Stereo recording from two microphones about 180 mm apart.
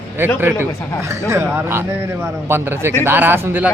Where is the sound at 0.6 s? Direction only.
15° right (ahead or behind).